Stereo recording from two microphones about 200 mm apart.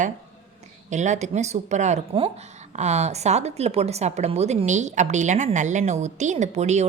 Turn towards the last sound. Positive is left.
turn(degrees=-35)  # may be behind; listen again after turning